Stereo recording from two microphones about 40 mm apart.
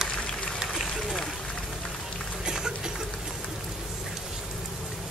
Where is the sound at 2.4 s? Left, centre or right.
Centre.